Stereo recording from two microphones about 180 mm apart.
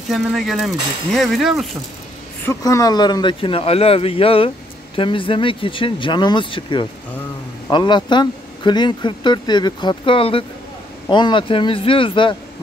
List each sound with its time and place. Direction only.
0.1 s speech: centre (ahead or behind)
2.4 s speech: 20° left (ahead or behind)